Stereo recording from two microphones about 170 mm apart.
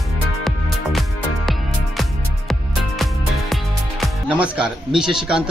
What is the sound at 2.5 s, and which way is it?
Music, centre (ahead or behind).